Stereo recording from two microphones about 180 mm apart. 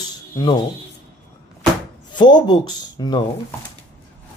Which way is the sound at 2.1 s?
25° left (ahead or behind).